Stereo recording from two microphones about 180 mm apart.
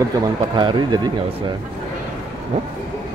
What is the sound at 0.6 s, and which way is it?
Speech, 25° right (ahead or behind).